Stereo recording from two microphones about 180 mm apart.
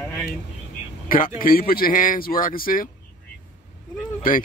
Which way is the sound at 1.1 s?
50° left (ahead or behind).